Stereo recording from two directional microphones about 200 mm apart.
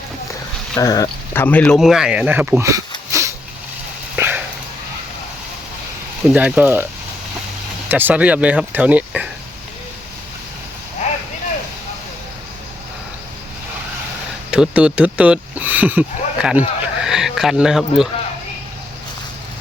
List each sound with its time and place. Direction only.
0.8 s speech: 20° left (ahead or behind); by 2.8 s 15° right (ahead or behind)
3.1 s a sound: 15° right (ahead or behind)
6.2 s speech: 5° right (ahead or behind)
7.9 s speech: 10° right (ahead or behind)
14.5 s speech: 5° right (ahead or behind)